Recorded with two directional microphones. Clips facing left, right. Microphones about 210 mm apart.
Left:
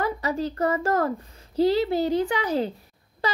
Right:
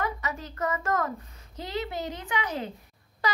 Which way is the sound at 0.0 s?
35° left (ahead or behind).